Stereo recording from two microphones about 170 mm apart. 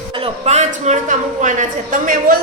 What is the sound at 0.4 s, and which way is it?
A woman's voice, 40° right (ahead or behind).